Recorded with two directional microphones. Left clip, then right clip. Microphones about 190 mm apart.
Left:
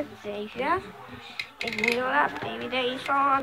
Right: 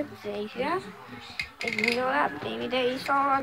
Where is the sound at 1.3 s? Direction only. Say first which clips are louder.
Right 1 dB; 5° left (ahead or behind).